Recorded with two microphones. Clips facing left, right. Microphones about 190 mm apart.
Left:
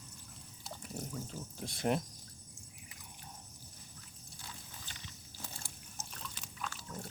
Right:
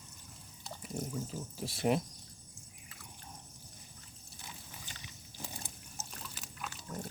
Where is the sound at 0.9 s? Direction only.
10° right (ahead or behind).